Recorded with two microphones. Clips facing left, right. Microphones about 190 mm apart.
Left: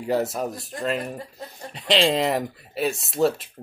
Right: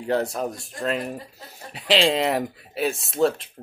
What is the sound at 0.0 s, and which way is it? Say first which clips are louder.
Speech: even; 5° left (ahead or behind).